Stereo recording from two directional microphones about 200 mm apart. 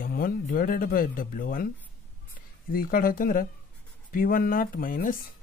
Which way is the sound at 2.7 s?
45° left (ahead or behind).